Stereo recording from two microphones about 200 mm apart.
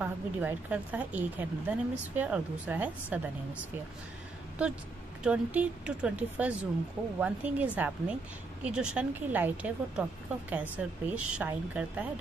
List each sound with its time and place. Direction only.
0.0 s speech: 5° right (ahead or behind)
5.2 s a woman's voice: 5° right (ahead or behind)